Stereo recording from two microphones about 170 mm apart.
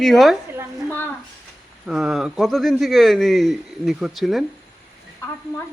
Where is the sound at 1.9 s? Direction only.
Centre (ahead or behind).